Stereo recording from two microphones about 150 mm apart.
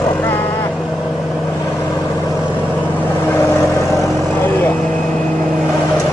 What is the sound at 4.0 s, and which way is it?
Vehicle, 15° left (ahead or behind).